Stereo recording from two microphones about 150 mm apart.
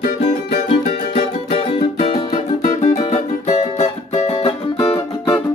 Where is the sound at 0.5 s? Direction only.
45° left (ahead or behind).